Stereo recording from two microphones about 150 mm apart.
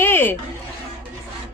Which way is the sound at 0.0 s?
15° left (ahead or behind).